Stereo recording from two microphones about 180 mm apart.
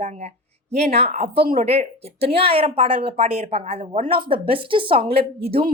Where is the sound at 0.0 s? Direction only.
40° right (ahead or behind).